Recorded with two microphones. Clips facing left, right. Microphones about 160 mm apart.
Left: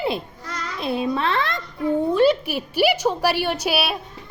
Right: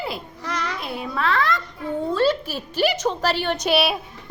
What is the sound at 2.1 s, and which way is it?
A woman's voice, 15° left (ahead or behind).